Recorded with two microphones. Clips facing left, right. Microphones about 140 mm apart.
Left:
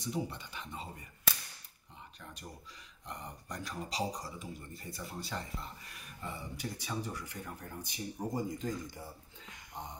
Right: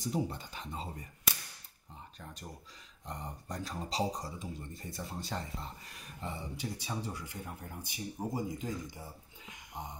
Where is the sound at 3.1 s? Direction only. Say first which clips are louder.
Right 2 dB; 35° right (ahead or behind).